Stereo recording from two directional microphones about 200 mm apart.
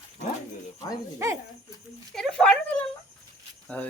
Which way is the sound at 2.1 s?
5° left (ahead or behind).